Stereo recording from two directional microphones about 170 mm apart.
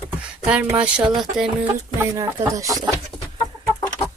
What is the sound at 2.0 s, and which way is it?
Speech, 20° right (ahead or behind).